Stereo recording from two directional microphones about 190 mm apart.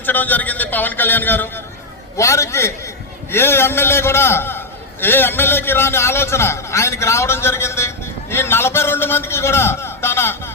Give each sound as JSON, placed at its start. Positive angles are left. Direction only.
{"t": 0.0, "sound": "a man's voice", "side_deg": 10}